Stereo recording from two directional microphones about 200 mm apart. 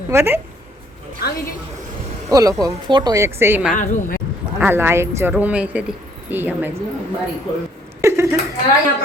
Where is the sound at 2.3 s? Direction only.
15° right (ahead or behind).